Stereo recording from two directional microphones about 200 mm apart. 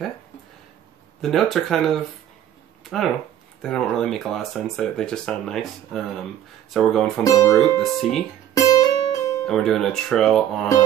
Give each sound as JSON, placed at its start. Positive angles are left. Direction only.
{"t": 1.2, "sound": "speech", "side_deg": 0}
{"t": 7.2, "sound": "speech", "side_deg": 15}
{"t": 7.8, "sound": "speech", "side_deg": 0}
{"t": 8.6, "sound": "music", "side_deg": 20}
{"t": 9.5, "sound": "speech", "side_deg": 0}